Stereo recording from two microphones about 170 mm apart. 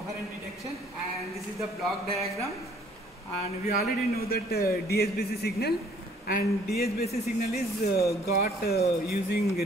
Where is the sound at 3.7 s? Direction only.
65° left (ahead or behind).